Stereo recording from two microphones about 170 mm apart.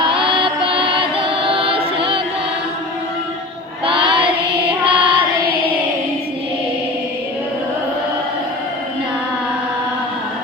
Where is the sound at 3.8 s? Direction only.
30° right (ahead or behind).